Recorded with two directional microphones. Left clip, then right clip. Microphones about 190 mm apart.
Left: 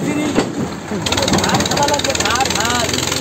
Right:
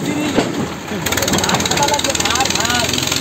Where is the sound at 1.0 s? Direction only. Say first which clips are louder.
Left 1 dB; 45° right (ahead or behind).